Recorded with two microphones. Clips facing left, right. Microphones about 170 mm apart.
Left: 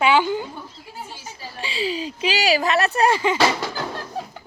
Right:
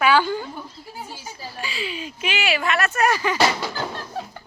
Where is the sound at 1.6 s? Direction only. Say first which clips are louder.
Left 5 dB; 30° left (ahead or behind).